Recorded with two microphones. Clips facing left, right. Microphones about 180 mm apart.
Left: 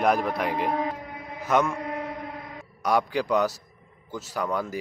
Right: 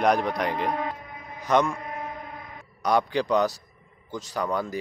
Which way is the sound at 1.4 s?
5° left (ahead or behind).